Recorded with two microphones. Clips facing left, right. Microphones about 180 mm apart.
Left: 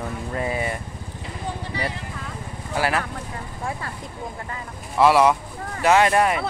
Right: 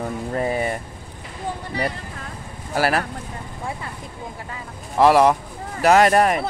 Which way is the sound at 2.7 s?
40° right (ahead or behind).